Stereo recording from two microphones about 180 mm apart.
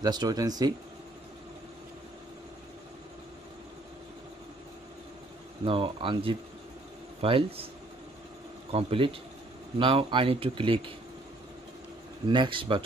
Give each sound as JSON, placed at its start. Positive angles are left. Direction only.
{"t": 0.0, "sound": "speech", "side_deg": -20}
{"t": 5.7, "sound": "speech", "side_deg": -30}
{"t": 8.7, "sound": "speech", "side_deg": -30}
{"t": 12.3, "sound": "speech", "side_deg": -25}